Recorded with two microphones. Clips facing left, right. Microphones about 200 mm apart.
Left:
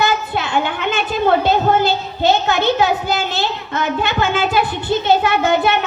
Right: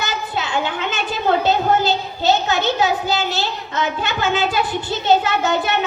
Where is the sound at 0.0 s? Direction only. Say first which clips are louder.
Left 6 dB; 60° left (ahead or behind).